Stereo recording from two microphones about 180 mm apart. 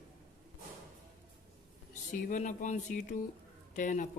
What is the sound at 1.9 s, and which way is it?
Speech, 45° left (ahead or behind).